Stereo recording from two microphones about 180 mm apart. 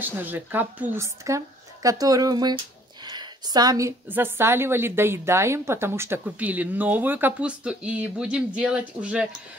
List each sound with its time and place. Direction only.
0.0 s a woman's voice: 10° right (ahead or behind)